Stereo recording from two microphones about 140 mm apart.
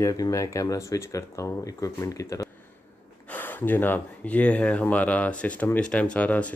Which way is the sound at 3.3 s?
15° left (ahead or behind).